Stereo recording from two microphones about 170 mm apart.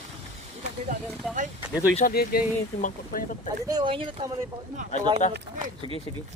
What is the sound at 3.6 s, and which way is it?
Speech, 25° right (ahead or behind).